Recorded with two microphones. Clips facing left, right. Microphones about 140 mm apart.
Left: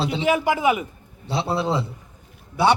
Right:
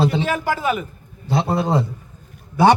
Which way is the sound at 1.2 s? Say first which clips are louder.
Right 3 dB; 45° right (ahead or behind).